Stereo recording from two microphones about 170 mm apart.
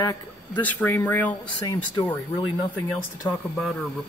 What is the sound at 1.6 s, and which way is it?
Speech, 25° left (ahead or behind).